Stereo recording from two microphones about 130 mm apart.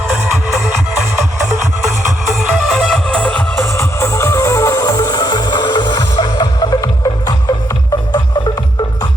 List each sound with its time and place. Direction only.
2.3 s music: 5° left (ahead or behind)
3.7 s music: 20° left (ahead or behind)